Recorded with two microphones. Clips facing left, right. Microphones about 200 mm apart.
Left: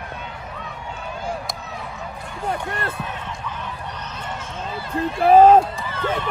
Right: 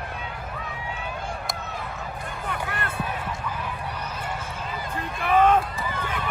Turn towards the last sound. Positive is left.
turn(degrees=-15)  # may be behind; listen again after turning